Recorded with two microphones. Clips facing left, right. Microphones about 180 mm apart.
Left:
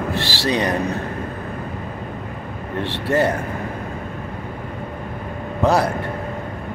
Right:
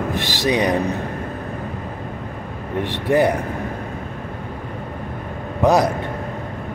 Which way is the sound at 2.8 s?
15° right (ahead or behind).